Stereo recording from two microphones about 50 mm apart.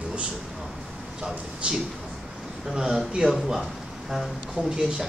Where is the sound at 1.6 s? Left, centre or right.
Right.